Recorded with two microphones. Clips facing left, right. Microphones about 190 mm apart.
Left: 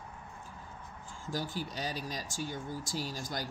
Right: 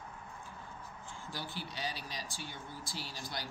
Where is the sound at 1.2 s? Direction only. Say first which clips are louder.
Left 7 dB; 45° left (ahead or behind).